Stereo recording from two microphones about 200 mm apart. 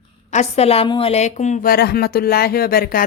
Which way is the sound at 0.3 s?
35° left (ahead or behind).